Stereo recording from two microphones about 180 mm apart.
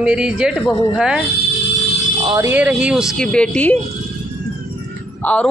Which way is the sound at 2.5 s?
5° right (ahead or behind).